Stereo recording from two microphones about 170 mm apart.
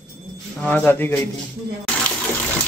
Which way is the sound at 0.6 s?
10° left (ahead or behind).